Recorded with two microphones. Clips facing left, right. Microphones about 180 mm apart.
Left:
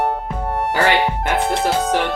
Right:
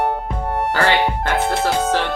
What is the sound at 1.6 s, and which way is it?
Speech, centre (ahead or behind).